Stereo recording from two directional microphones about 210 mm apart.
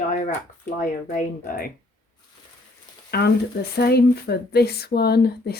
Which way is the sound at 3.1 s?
50° left (ahead or behind).